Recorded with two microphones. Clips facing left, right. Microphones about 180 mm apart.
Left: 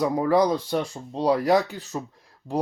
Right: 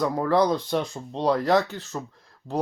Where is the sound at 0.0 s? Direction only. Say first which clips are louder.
Left 1 dB; 10° left (ahead or behind).